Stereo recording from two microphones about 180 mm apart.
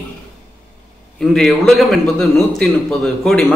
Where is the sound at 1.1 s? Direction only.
Centre (ahead or behind).